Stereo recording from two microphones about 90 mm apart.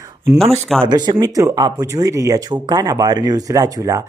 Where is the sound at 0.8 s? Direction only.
55° right (ahead or behind); by 2.5 s 35° right (ahead or behind).